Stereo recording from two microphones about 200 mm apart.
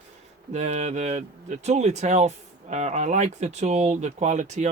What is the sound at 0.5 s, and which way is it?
Speech, 35° right (ahead or behind).